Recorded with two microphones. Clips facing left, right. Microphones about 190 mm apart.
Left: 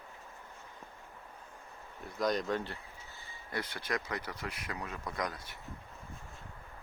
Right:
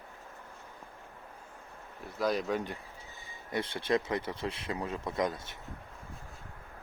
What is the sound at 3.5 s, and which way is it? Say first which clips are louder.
Speech: right 7 dB; 25° right (ahead or behind).